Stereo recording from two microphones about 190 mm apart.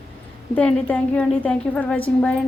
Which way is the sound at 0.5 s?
5° left (ahead or behind).